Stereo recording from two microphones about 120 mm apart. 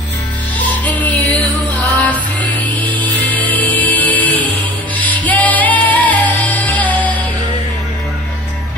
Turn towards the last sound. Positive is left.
turn(degrees=15)  # may be behind; listen again after turning